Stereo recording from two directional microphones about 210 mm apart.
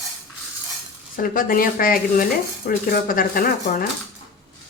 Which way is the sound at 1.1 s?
40° left (ahead or behind).